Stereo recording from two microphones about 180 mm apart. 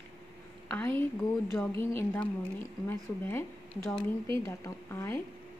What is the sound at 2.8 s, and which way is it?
Speech, 10° left (ahead or behind).